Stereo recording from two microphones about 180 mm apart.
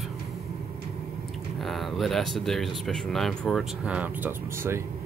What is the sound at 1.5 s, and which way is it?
Speech, centre (ahead or behind).